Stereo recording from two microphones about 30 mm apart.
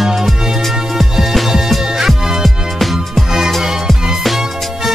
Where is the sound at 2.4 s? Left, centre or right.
Centre.